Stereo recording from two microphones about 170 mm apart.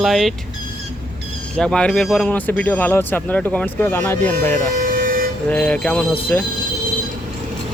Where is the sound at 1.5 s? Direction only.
5° left (ahead or behind).